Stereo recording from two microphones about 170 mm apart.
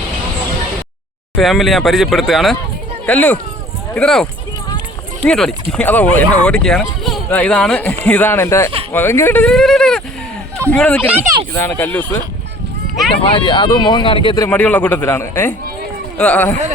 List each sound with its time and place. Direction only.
1.4 s speech: centre (ahead or behind)
11.1 s speech: 10° right (ahead or behind)
11.6 s speech: 10° left (ahead or behind)
13.2 s speech: 30° left (ahead or behind); by 16.6 s 10° left (ahead or behind)